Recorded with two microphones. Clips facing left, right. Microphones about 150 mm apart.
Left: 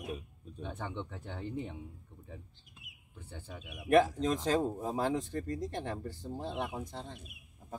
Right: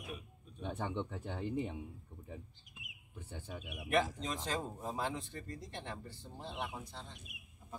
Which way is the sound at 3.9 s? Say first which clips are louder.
Left 8 dB; 45° left (ahead or behind).